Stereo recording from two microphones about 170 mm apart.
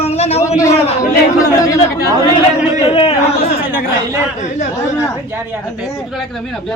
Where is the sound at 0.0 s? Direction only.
40° left (ahead or behind).